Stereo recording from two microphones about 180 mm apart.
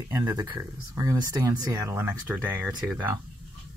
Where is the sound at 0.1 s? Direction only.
15° right (ahead or behind).